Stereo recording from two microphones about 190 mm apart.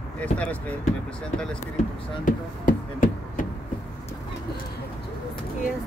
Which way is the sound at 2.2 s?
45° left (ahead or behind).